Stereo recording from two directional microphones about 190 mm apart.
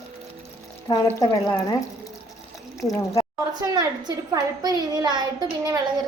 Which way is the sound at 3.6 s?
20° right (ahead or behind).